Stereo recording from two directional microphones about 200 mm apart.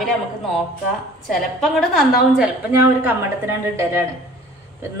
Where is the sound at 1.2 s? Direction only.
Centre (ahead or behind).